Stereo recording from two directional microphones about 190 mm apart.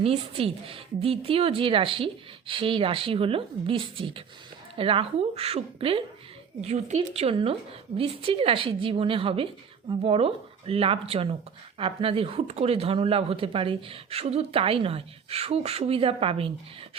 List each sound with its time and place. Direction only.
0.0 s a woman's voice: 30° right (ahead or behind)